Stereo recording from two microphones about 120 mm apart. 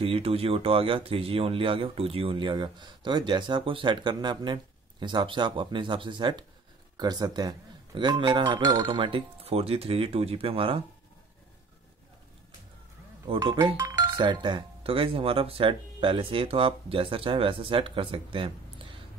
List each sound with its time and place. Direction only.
0.0 s speech: 50° right (ahead or behind)
13.3 s speech: 50° right (ahead or behind)
13.7 s speech: 30° right (ahead or behind)